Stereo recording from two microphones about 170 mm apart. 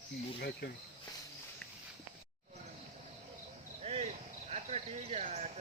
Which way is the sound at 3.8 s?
40° right (ahead or behind).